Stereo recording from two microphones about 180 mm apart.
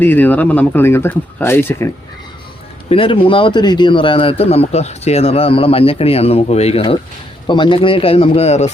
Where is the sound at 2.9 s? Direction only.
30° left (ahead or behind).